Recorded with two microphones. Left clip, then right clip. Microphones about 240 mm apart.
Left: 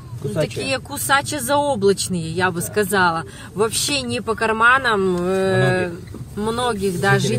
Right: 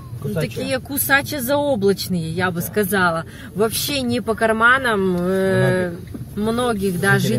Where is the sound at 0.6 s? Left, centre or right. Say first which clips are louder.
Even; centre.